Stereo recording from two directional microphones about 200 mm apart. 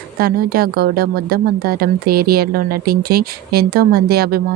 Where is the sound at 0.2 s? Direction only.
50° right (ahead or behind).